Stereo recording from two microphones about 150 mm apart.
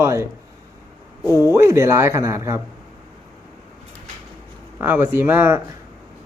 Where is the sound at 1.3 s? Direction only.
25° left (ahead or behind).